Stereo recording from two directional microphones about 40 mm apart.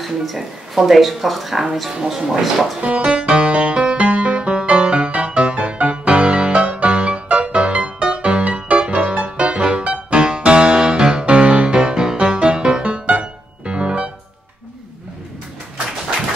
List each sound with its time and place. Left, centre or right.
0.0 s speech: centre
2.8 s music: right